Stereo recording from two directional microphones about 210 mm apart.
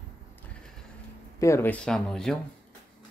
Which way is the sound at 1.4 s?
10° left (ahead or behind).